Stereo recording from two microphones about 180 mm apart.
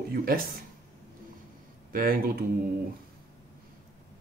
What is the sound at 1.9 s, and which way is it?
Speech, 50° right (ahead or behind).